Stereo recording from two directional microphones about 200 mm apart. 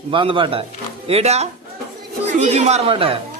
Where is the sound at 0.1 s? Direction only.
25° right (ahead or behind).